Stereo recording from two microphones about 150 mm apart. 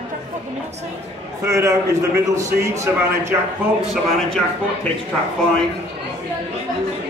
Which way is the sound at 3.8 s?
5° right (ahead or behind).